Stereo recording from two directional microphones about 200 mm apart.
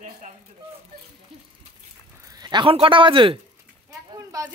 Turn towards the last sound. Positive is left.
turn(degrees=-15)  # may be behind; listen again after turning